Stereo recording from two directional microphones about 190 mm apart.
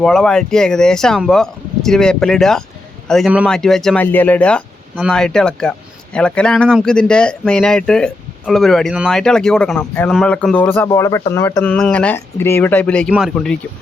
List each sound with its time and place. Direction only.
0.0 s speech: centre (ahead or behind)